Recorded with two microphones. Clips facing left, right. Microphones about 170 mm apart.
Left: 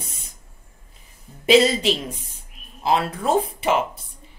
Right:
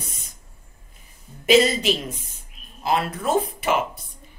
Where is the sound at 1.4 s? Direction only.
30° left (ahead or behind).